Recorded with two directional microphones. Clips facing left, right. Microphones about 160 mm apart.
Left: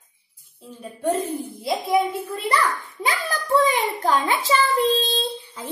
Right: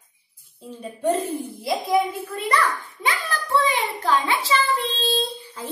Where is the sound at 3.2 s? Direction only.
40° left (ahead or behind).